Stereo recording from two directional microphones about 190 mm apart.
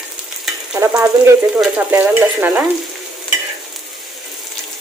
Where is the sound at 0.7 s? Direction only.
15° right (ahead or behind).